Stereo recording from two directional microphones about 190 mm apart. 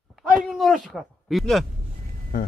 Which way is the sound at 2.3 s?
45° left (ahead or behind).